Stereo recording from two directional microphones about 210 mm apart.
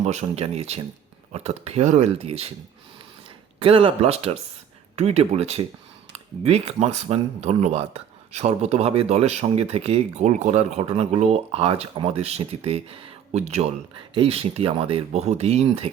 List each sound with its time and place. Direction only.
0.0 s speech: 30° right (ahead or behind)
3.6 s speech: 25° right (ahead or behind)